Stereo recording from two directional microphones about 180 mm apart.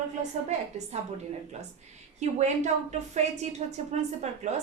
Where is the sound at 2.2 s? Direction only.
40° right (ahead or behind).